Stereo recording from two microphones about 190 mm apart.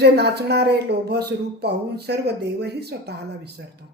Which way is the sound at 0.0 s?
60° right (ahead or behind).